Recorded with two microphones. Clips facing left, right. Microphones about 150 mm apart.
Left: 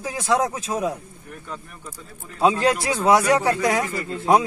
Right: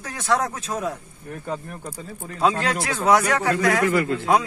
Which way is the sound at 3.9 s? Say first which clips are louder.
Right 8 dB; 90° right.